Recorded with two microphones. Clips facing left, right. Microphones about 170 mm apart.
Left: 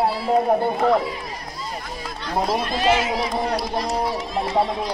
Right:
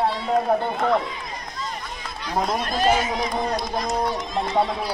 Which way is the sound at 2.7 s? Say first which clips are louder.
Even; 5° left (ahead or behind).